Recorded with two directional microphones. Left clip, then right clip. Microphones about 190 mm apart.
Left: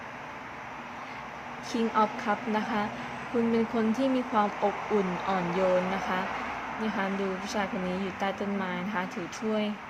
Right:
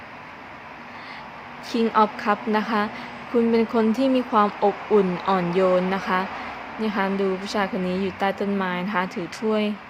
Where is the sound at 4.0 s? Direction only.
30° right (ahead or behind).